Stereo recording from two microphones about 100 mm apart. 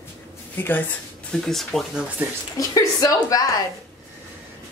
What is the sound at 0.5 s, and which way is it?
Speech, 20° left (ahead or behind).